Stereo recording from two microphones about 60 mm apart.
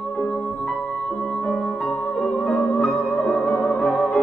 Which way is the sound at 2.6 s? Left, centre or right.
Centre.